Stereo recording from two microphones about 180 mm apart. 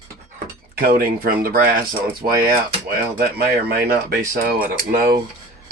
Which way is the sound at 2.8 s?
60° right (ahead or behind).